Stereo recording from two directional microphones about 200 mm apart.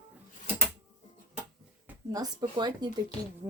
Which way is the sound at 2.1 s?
20° right (ahead or behind).